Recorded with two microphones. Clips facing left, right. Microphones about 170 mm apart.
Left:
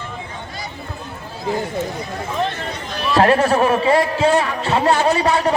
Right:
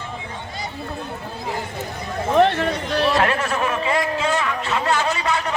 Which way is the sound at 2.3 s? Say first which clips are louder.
Right 8 dB; 70° right (ahead or behind).